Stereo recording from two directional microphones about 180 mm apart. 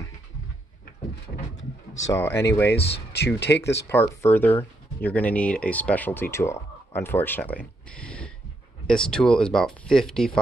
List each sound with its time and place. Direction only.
2.0 s speech: 15° left (ahead or behind)
2.7 s speech: 65° left (ahead or behind)
3.9 s speech: 10° left (ahead or behind)